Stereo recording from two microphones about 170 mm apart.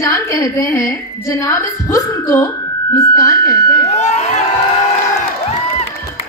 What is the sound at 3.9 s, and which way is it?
Crowd, 40° left (ahead or behind).